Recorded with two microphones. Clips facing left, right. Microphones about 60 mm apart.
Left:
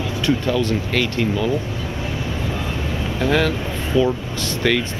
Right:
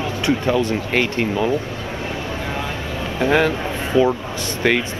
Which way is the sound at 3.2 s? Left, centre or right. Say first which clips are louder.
Right 2 dB; centre.